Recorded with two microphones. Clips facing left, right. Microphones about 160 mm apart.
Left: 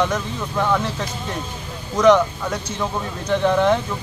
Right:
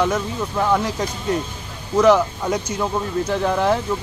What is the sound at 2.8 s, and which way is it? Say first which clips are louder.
Speech: right 4 dB; 5° right (ahead or behind).